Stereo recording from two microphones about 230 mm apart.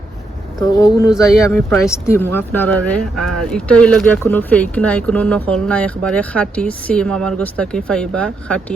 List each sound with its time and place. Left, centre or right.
0.6 s speech: centre
1.5 s speech: centre